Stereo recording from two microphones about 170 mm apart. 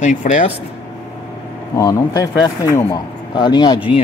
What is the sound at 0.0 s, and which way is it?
Speech, 50° left (ahead or behind).